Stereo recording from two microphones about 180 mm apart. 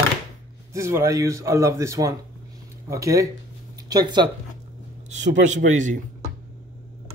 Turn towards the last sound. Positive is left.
turn(degrees=-45)  # may be behind; listen again after turning